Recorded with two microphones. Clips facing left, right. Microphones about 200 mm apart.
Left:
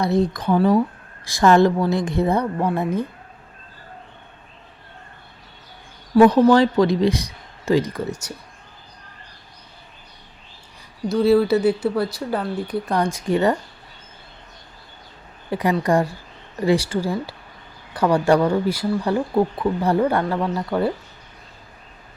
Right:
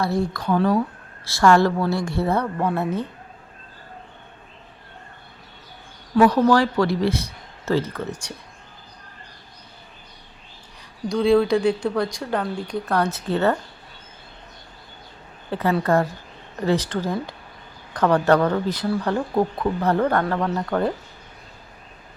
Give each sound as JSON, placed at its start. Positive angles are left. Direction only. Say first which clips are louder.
{"t": 0.0, "sound": "speech", "louder": "left 3 dB", "side_deg": 20}
{"t": 6.2, "sound": "speech", "louder": "left 3 dB", "side_deg": 20}
{"t": 11.1, "sound": "speech", "louder": "left 1 dB", "side_deg": 5}
{"t": 15.4, "sound": "a woman's voice", "louder": "left 1 dB", "side_deg": 15}